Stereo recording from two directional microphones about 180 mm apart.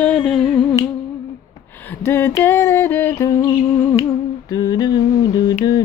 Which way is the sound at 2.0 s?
10° left (ahead or behind).